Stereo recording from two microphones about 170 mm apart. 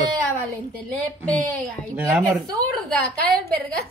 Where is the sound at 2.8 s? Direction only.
5° left (ahead or behind).